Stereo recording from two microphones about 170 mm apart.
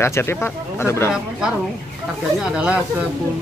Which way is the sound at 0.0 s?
15° left (ahead or behind).